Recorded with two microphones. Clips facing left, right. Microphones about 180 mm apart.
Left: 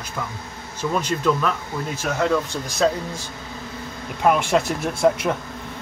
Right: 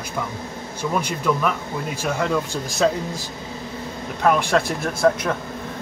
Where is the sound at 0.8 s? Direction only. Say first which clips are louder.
Left 1 dB; 10° right (ahead or behind).